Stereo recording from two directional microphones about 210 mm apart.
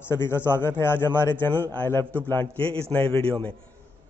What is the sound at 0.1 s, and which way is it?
A man's voice, 10° left (ahead or behind).